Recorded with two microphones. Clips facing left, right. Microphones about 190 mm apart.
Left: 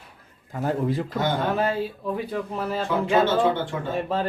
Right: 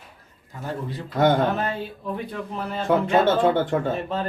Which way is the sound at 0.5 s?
50° left (ahead or behind).